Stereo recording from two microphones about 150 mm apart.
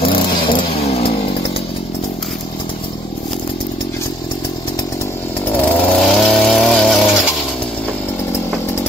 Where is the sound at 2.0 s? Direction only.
Centre (ahead or behind).